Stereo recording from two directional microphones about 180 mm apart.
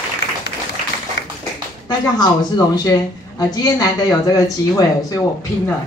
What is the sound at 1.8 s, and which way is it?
Speech, 25° left (ahead or behind).